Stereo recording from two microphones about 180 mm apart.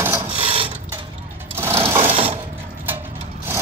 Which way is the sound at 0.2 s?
30° right (ahead or behind).